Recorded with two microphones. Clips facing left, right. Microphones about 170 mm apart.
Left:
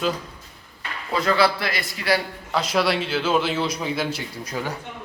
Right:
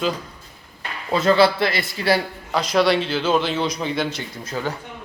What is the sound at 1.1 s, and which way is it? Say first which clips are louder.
A man's voice: right 4 dB; 25° right (ahead or behind).